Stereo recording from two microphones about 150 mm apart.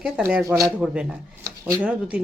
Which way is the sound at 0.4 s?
20° right (ahead or behind).